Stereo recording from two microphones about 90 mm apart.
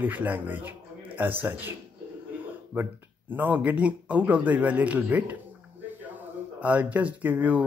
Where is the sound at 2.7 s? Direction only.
20° right (ahead or behind).